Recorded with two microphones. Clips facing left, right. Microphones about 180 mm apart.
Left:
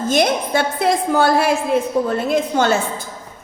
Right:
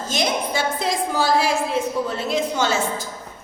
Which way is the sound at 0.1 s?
55° left (ahead or behind).